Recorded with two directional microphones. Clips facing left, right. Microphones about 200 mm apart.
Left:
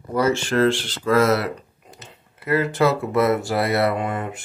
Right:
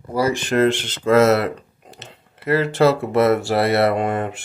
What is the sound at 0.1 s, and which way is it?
Speech, 15° right (ahead or behind).